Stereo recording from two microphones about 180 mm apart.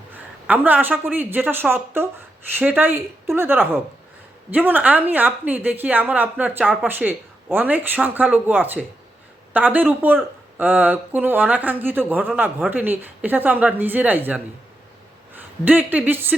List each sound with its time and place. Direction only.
0.4 s speech: 10° right (ahead or behind)